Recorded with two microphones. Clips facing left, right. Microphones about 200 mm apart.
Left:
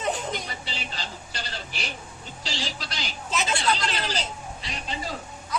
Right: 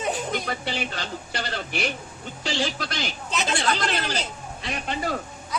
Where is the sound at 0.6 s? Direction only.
60° right (ahead or behind).